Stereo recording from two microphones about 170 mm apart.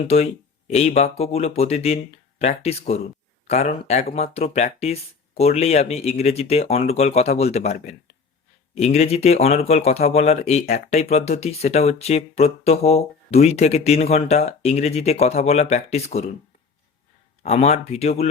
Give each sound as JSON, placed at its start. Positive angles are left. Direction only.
{"t": 0.7, "sound": "speech", "side_deg": 35}
{"t": 17.4, "sound": "speech", "side_deg": 40}